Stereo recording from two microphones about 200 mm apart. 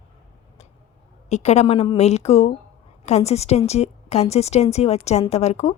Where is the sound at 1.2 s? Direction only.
35° left (ahead or behind).